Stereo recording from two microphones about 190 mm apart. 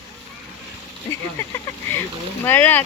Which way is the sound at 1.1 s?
15° left (ahead or behind).